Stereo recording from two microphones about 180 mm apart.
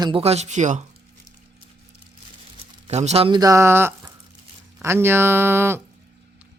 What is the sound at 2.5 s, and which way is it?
Speech, 35° right (ahead or behind).